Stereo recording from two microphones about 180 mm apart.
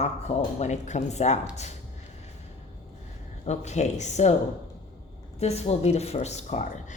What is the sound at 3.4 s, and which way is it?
Speech, 40° left (ahead or behind).